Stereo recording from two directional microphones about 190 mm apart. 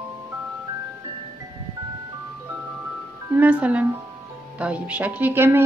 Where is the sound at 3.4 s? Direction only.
5° right (ahead or behind).